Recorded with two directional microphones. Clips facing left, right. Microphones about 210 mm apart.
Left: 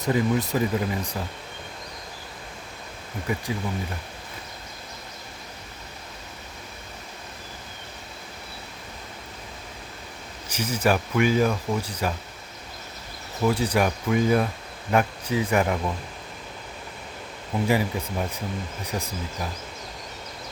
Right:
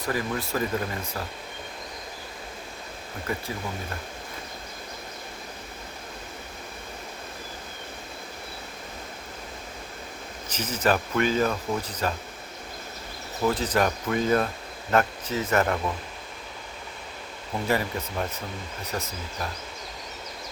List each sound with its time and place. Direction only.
0.0 s speech: 20° left (ahead or behind)
3.3 s speech: 15° left (ahead or behind)
10.5 s speech: 10° left (ahead or behind)
13.4 s speech: 10° left (ahead or behind)
17.7 s speech: 10° left (ahead or behind)